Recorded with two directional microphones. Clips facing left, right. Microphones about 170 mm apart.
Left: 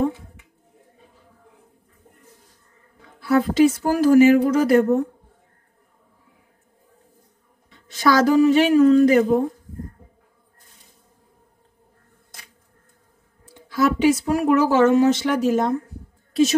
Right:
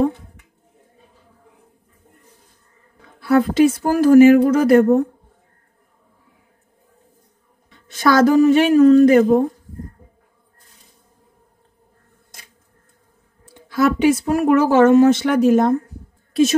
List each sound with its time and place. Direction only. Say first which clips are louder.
3.2 s a woman's voice: right 2 dB; 55° right (ahead or behind)
7.9 s a woman's voice: right 3 dB; 50° right (ahead or behind)
13.7 s a woman's voice: right 2 dB; 60° right (ahead or behind)